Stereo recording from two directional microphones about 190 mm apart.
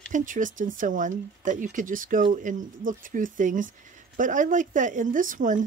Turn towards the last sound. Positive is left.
turn(degrees=-45)  # may be behind; listen again after turning